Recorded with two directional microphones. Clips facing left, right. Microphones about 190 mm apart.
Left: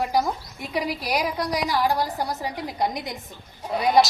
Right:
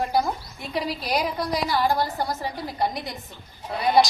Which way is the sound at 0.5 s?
10° left (ahead or behind).